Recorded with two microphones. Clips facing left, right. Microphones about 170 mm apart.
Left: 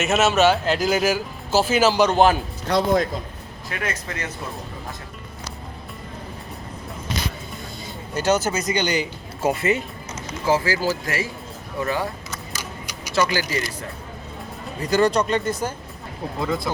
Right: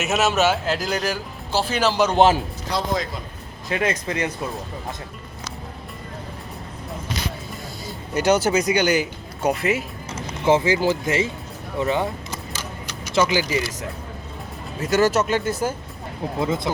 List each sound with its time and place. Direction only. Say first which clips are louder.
0.0 s speech: left 2 dB; centre (ahead or behind)
2.1 s speech: right 1 dB; 20° right (ahead or behind)
2.6 s speech: left 6 dB; 55° left (ahead or behind)
3.7 s speech: right 6 dB; 20° right (ahead or behind)
8.1 s speech: right 3 dB; 10° right (ahead or behind)
10.1 s speech: right 3 dB; 25° right (ahead or behind)
12.5 s a sound: right 1 dB; 10° left (ahead or behind)
13.1 s speech: right 2 dB; 15° right (ahead or behind)
14.8 s speech: even; 5° right (ahead or behind)
16.4 s speech: right 1 dB; 20° right (ahead or behind)